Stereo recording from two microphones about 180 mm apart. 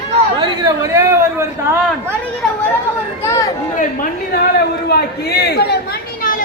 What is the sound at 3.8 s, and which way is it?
Speech, 50° left (ahead or behind).